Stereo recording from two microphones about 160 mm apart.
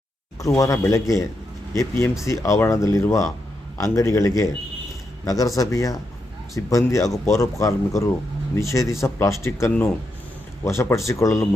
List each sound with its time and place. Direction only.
0.3 s speech: 20° left (ahead or behind)